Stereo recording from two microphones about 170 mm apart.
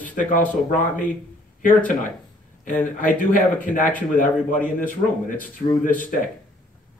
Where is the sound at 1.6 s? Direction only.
50° left (ahead or behind).